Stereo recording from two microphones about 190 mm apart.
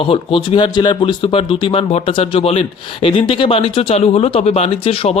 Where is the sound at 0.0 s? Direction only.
30° left (ahead or behind).